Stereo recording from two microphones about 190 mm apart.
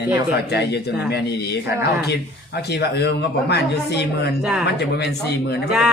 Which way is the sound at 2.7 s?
60° left (ahead or behind).